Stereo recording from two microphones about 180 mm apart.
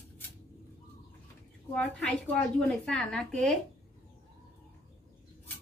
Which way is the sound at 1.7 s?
5° left (ahead or behind).